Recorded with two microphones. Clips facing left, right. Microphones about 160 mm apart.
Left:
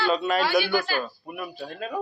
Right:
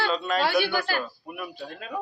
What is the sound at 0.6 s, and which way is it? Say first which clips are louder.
Speech: left 1 dB; 65° right (ahead or behind).